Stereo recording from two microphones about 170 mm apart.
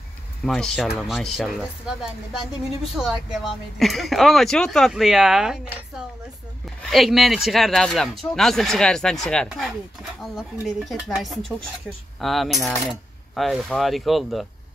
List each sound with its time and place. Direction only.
0.5 s a woman's voice: centre (ahead or behind)